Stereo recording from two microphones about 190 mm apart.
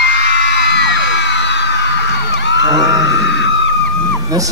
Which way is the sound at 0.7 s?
65° left (ahead or behind).